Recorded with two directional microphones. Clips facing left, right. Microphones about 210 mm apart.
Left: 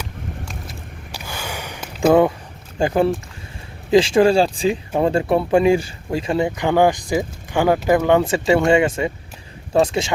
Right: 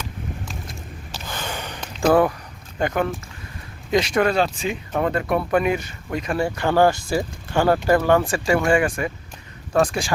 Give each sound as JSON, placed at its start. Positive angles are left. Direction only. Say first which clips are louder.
{"t": 1.1, "sound": "gasp", "louder": "left 1 dB", "side_deg": 10}
{"t": 2.7, "sound": "speech", "louder": "left 5 dB", "side_deg": 30}